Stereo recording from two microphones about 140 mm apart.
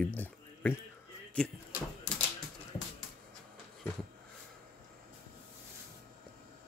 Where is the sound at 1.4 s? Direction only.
5° left (ahead or behind).